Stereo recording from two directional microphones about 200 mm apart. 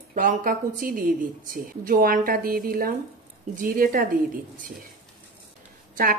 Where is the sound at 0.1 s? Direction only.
40° right (ahead or behind).